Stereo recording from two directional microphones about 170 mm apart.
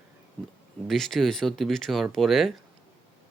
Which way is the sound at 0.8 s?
Centre (ahead or behind).